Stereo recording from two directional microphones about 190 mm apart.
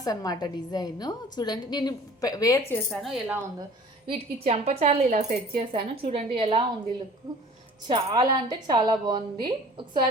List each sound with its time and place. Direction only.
0.0 s a woman's voice: 20° left (ahead or behind)
2.9 s speech: centre (ahead or behind)
4.0 s a woman's voice: 30° right (ahead or behind)
7.9 s a woman's voice: 25° right (ahead or behind)